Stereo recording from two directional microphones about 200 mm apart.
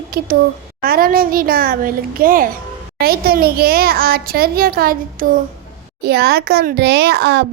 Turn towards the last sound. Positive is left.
turn(degrees=-55)  # may be behind; listen again after turning